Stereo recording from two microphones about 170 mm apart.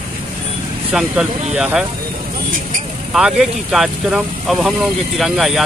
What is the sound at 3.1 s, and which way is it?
Speech, centre (ahead or behind).